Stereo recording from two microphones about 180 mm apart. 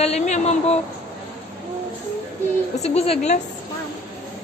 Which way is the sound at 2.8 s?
35° left (ahead or behind).